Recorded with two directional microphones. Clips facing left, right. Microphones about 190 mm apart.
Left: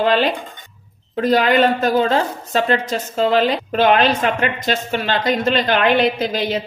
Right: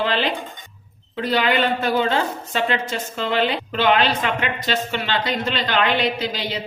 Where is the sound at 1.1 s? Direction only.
45° left (ahead or behind).